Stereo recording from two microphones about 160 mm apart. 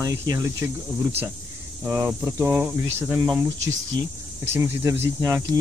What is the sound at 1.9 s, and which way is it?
Speech, 15° right (ahead or behind).